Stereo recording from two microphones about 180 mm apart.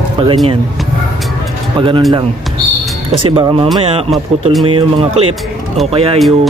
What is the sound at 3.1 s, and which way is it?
Music, 30° right (ahead or behind).